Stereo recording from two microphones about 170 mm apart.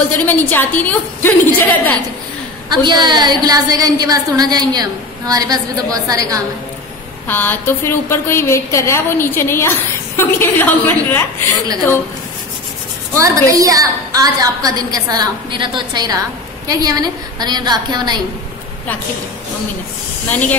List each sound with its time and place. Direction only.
0.2 s a woman's voice: 10° left (ahead or behind)
2.7 s a woman's voice: 25° right (ahead or behind)
7.2 s a woman's voice: 10° left (ahead or behind)
13.1 s a woman's voice: 20° right (ahead or behind)